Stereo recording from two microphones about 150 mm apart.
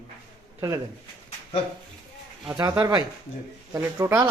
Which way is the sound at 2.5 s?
25° right (ahead or behind).